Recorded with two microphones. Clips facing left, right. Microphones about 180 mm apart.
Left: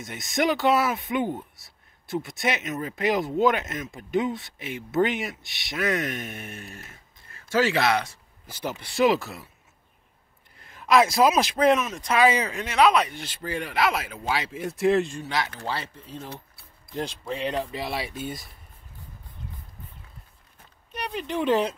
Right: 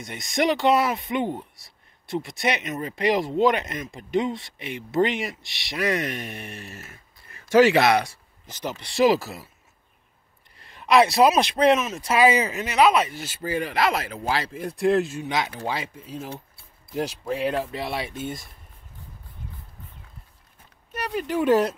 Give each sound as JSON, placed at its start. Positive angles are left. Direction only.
{"t": 0.0, "sound": "speech", "side_deg": 0}
{"t": 7.2, "sound": "speech", "side_deg": -15}
{"t": 8.5, "sound": "speech", "side_deg": 10}
{"t": 8.9, "sound": "speech", "side_deg": 0}
{"t": 10.9, "sound": "speech", "side_deg": 0}
{"t": 15.2, "sound": "speech", "side_deg": -15}
{"t": 20.9, "sound": "speech", "side_deg": -5}